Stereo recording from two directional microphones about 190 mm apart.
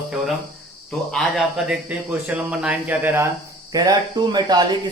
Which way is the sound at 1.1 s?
Centre (ahead or behind).